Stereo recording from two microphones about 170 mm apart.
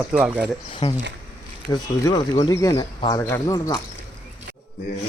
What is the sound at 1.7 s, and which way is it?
Speech, 20° left (ahead or behind).